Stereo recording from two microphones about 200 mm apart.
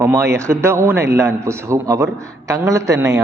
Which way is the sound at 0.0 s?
15° right (ahead or behind).